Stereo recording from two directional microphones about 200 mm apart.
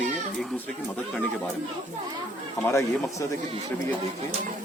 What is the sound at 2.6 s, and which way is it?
Speech, 15° left (ahead or behind).